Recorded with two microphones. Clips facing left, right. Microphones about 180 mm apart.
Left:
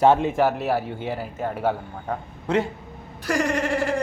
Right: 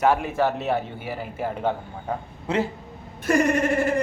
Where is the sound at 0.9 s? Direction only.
20° left (ahead or behind).